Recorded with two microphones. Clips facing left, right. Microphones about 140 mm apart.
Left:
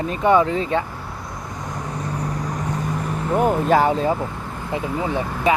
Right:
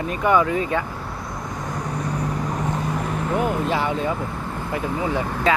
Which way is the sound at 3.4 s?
45° left (ahead or behind).